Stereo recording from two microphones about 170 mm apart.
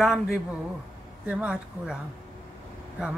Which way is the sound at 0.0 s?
Centre (ahead or behind).